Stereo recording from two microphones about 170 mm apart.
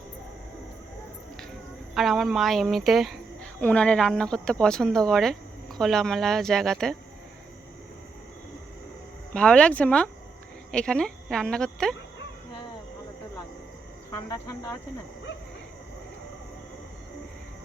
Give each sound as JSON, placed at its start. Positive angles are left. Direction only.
{"t": 2.0, "sound": "speech", "side_deg": 0}
{"t": 9.3, "sound": "speech", "side_deg": 5}
{"t": 14.1, "sound": "speech", "side_deg": 20}